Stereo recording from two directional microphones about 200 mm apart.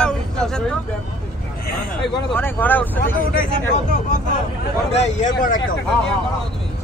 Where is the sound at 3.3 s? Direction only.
40° left (ahead or behind).